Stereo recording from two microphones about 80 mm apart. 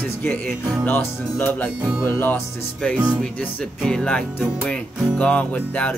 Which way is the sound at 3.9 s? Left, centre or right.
Centre.